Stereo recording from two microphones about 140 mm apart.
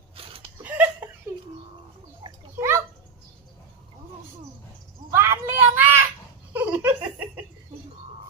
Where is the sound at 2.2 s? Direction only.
30° right (ahead or behind).